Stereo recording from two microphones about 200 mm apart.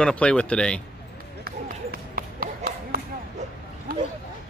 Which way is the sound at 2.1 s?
45° right (ahead or behind).